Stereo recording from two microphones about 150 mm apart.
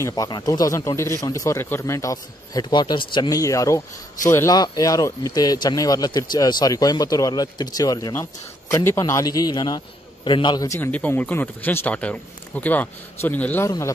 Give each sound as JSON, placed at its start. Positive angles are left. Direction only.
{"t": 0.0, "sound": "speech", "side_deg": 25}
{"t": 10.8, "sound": "speech", "side_deg": 10}